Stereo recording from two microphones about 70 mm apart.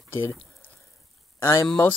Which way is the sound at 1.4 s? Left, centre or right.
Left.